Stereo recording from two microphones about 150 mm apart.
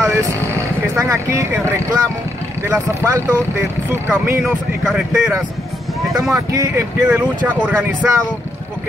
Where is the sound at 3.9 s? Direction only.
15° right (ahead or behind).